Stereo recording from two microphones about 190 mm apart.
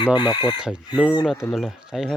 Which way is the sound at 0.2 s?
25° left (ahead or behind).